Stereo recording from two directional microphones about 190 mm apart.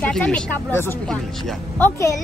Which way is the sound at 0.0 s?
5° left (ahead or behind).